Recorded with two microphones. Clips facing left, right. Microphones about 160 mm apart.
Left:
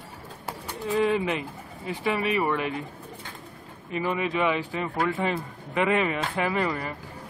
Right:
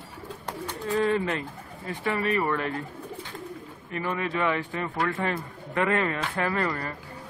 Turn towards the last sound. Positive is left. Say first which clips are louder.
# left 1 dB
turn(degrees=15)  # may be behind; listen again after turning